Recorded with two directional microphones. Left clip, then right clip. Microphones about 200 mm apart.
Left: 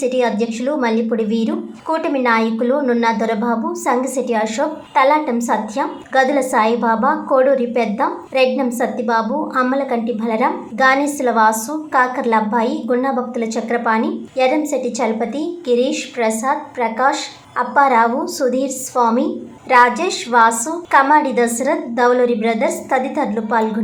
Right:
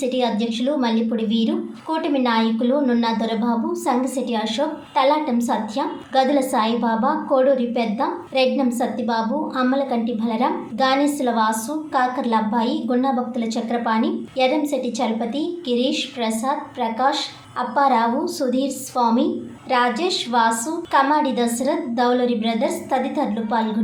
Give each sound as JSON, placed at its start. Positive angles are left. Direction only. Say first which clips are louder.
{"t": 0.2, "sound": "a woman's voice", "louder": "left 4 dB", "side_deg": 15}